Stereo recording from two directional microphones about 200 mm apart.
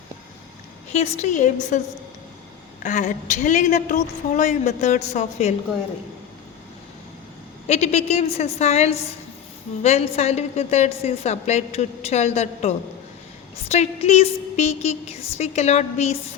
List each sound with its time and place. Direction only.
0.9 s a woman's voice: 30° left (ahead or behind)
2.8 s a woman's voice: 40° left (ahead or behind)
7.7 s a woman's voice: 35° left (ahead or behind)